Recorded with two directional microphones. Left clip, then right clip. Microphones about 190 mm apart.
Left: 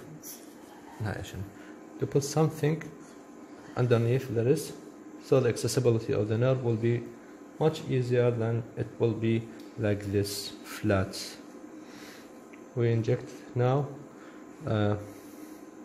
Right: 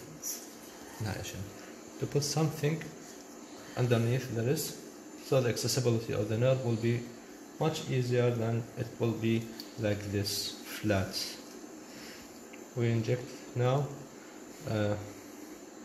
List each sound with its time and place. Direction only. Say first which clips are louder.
2.1 s speech: left 5 dB; 65° left (ahead or behind)
3.7 s speech: left 4 dB; 65° left (ahead or behind)
12.7 s speech: left 4 dB; 65° left (ahead or behind)